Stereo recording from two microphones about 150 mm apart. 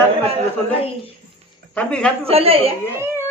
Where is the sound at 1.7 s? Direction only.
5° left (ahead or behind).